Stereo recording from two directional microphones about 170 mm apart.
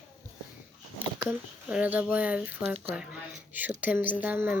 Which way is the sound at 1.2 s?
5° right (ahead or behind).